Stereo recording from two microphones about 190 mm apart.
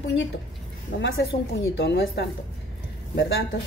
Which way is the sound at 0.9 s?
65° left (ahead or behind).